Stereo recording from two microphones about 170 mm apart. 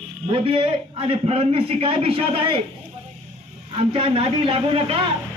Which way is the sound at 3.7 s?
30° right (ahead or behind).